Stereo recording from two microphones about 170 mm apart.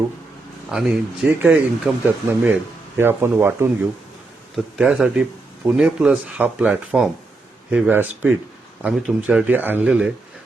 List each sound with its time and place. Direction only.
0.7 s speech: 5° right (ahead or behind)